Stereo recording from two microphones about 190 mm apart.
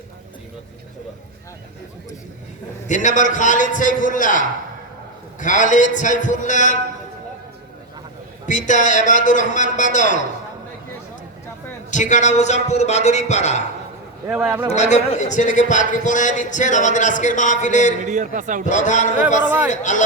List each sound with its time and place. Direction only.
2.8 s a man's voice: 40° left (ahead or behind)
8.4 s a man's voice: 40° left (ahead or behind)
11.9 s a man's voice: 40° left (ahead or behind)
14.3 s speech: 5° right (ahead or behind)
14.7 s a man's voice: 35° left (ahead or behind)
18.0 s a man's voice: 40° right (ahead or behind)
18.6 s a man's voice: 40° left (ahead or behind)
19.5 s speech: 10° right (ahead or behind)
19.7 s a man's voice: 40° left (ahead or behind)